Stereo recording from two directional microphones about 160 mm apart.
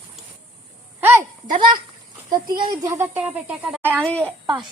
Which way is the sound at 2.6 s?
25° right (ahead or behind).